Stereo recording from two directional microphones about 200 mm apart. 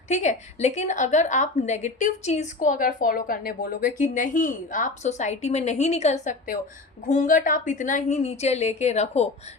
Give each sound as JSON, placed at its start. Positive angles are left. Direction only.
{"t": 0.1, "sound": "a woman's voice", "side_deg": 35}